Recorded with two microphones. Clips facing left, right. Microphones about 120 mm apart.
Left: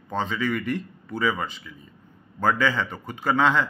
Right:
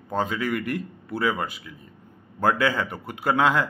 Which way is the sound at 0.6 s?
45° right (ahead or behind).